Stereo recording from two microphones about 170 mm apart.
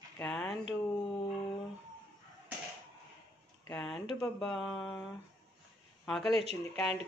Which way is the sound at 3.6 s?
5° left (ahead or behind).